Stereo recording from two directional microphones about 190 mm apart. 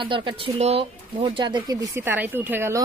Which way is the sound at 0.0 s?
25° right (ahead or behind).